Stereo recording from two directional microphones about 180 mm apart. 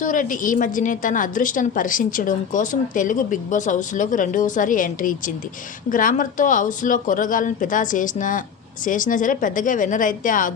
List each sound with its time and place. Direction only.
0.0 s a woman's voice: 45° left (ahead or behind)